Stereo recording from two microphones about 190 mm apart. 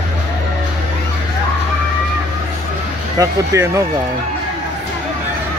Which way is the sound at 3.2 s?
15° right (ahead or behind).